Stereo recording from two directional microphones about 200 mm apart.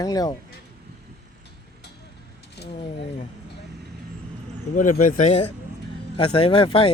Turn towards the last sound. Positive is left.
turn(degrees=25)  # may be behind; listen again after turning